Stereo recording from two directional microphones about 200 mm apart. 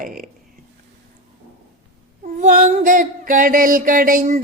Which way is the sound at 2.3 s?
40° right (ahead or behind).